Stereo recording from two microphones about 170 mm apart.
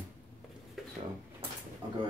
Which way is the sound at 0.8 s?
Centre (ahead or behind).